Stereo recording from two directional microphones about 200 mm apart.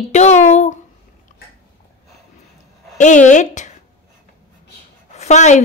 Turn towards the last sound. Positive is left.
turn(degrees=35)  # may be behind; listen again after turning